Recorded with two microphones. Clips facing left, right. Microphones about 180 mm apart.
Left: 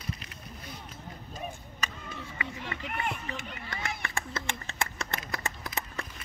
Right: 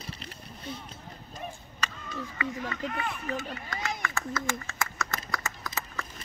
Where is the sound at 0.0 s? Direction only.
30° right (ahead or behind).